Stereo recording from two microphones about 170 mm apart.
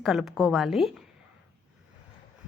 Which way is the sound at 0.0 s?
Centre (ahead or behind).